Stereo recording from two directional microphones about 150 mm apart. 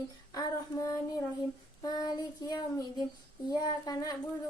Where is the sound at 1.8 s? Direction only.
25° left (ahead or behind).